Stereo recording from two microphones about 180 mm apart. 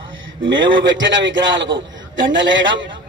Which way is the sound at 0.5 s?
90° right.